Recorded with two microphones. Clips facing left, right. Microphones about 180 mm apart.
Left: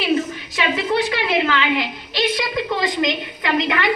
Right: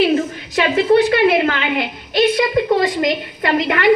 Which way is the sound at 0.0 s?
50° right (ahead or behind).